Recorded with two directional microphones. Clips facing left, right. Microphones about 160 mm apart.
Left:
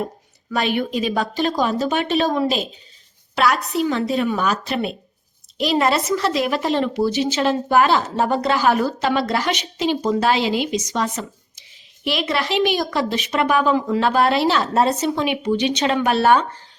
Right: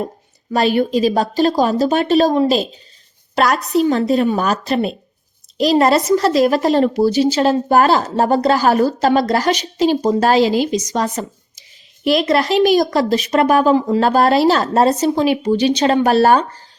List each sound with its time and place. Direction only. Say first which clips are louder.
0.5 s speech: right 6 dB; 40° right (ahead or behind)